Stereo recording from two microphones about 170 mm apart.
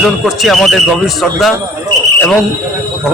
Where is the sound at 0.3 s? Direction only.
Centre (ahead or behind).